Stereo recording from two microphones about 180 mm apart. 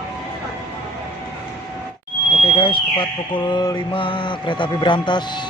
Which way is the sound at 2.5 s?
30° left (ahead or behind).